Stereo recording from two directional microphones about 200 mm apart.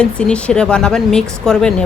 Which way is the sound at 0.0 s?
5° left (ahead or behind).